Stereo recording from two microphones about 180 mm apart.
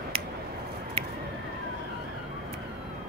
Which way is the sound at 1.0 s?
30° right (ahead or behind).